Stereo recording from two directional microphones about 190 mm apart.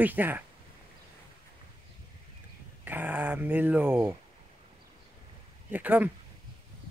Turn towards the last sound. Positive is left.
turn(degrees=-10)  # may be behind; listen again after turning